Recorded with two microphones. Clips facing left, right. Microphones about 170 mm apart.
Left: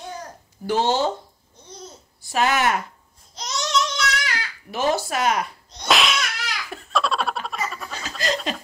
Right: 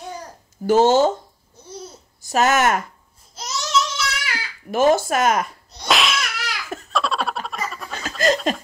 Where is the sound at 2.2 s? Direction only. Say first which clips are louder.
Right 3 dB; 45° right (ahead or behind).